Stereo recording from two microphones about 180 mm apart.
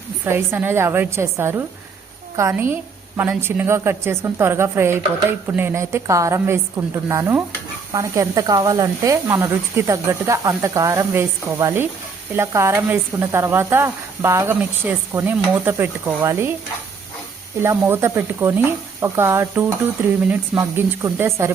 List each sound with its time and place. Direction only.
0.3 s speech: 10° right (ahead or behind)
17.6 s speech: 15° right (ahead or behind)